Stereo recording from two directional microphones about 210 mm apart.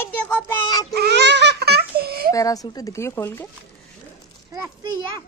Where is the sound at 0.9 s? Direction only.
50° right (ahead or behind).